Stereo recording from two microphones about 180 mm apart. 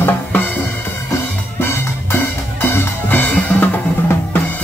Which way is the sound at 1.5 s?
15° left (ahead or behind).